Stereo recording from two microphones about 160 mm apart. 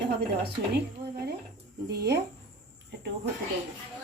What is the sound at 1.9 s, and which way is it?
Speech, 90° right.